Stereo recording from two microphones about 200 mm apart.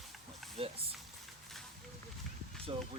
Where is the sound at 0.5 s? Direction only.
30° right (ahead or behind).